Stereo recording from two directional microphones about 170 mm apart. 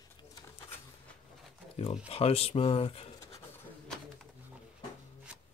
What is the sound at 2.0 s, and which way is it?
Speech, 35° left (ahead or behind).